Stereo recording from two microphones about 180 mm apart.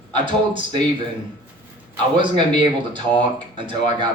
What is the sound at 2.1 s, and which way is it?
Speech, 25° right (ahead or behind).